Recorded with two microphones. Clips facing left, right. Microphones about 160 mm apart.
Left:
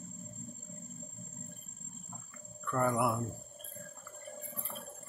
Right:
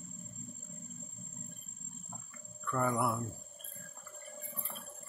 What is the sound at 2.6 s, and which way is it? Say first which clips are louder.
Speech: left 2 dB; centre (ahead or behind).